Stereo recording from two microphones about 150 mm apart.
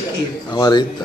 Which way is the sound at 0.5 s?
25° left (ahead or behind).